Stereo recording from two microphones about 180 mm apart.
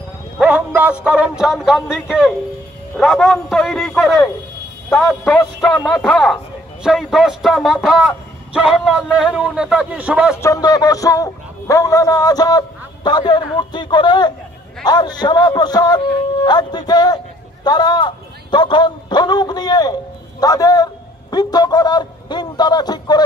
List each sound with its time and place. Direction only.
0.4 s a man's voice: 5° right (ahead or behind)
10.3 s a man's voice: 15° left (ahead or behind)